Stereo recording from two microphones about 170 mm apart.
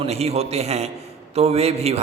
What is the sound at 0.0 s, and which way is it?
A man's voice, 40° right (ahead or behind).